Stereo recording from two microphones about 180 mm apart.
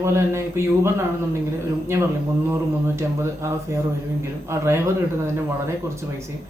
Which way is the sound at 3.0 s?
15° right (ahead or behind).